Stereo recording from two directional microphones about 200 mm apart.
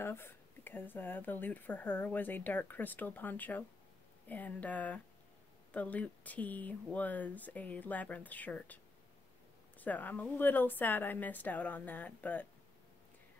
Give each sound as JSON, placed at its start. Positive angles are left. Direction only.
{"t": 0.0, "sound": "speech", "side_deg": 10}
{"t": 9.8, "sound": "speech", "side_deg": 10}